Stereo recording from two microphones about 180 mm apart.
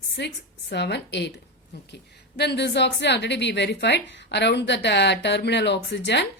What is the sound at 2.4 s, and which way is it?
A woman's voice, 70° left (ahead or behind).